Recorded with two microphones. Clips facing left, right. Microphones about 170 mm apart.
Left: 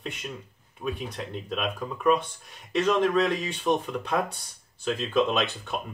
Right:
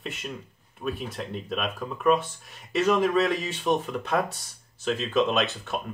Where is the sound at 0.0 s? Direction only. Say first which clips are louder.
Right 1 dB; centre (ahead or behind).